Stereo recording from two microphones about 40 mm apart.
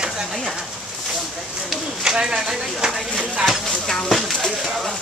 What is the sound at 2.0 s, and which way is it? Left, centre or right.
Speech, centre.